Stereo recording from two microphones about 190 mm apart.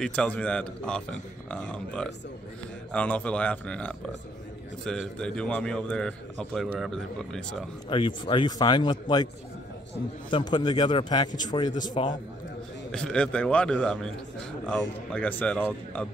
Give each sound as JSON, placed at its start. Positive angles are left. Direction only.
{"t": 0.0, "sound": "a man's voice", "side_deg": 5}
{"t": 7.9, "sound": "a man's voice", "side_deg": 25}
{"t": 10.3, "sound": "a man's voice", "side_deg": 25}
{"t": 12.9, "sound": "a man's voice", "side_deg": 5}